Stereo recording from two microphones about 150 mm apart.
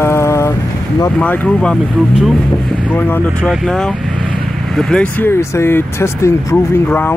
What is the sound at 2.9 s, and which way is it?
Speech, 10° left (ahead or behind).